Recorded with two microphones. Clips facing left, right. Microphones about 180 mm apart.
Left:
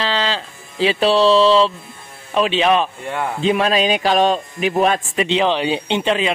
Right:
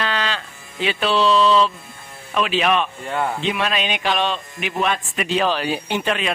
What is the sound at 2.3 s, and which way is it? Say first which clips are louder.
A man's voice: left 4 dB; 30° left (ahead or behind).